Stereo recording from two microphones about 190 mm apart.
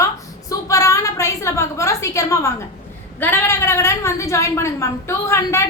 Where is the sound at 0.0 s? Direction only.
15° left (ahead or behind).